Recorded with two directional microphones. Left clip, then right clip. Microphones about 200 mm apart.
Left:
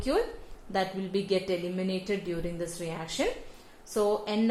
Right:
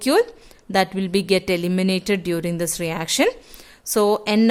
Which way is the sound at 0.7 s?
40° right (ahead or behind).